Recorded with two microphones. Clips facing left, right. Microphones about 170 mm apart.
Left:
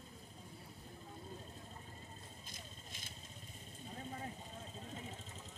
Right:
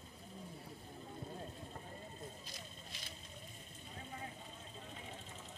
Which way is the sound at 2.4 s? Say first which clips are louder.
Right 2 dB; 50° left (ahead or behind).